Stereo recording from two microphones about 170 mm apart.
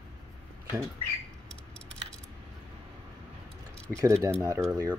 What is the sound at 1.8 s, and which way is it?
Keys jangling, 5° left (ahead or behind).